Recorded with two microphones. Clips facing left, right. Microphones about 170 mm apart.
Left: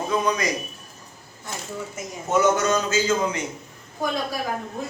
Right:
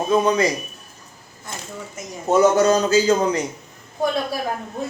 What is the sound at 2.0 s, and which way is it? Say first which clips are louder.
Speech: even; 10° left (ahead or behind).